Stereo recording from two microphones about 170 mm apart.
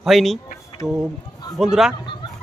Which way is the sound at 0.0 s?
Centre (ahead or behind).